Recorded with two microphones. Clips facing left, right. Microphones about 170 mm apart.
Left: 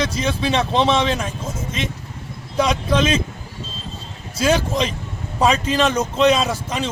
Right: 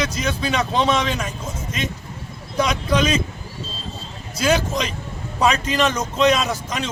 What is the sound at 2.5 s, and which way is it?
Speech, 30° left (ahead or behind).